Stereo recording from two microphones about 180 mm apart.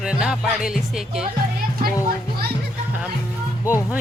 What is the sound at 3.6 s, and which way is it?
Speech, 15° left (ahead or behind).